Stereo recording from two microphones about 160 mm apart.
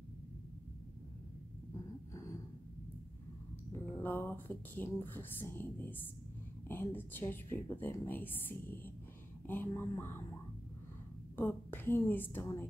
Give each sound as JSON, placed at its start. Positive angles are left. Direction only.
{"t": 1.7, "sound": "a sound", "side_deg": 20}
{"t": 3.7, "sound": "speech", "side_deg": 15}
{"t": 11.3, "sound": "speech", "side_deg": 15}